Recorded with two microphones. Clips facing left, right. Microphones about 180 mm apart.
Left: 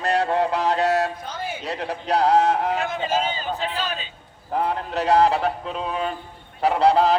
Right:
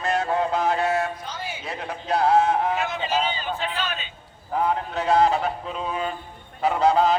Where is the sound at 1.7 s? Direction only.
35° left (ahead or behind).